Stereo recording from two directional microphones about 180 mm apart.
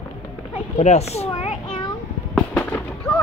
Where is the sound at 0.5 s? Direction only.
35° left (ahead or behind).